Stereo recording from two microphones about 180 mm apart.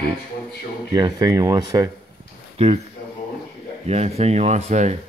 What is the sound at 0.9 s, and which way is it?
Speech, 20° right (ahead or behind).